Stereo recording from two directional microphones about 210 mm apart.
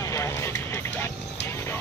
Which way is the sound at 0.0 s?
15° left (ahead or behind).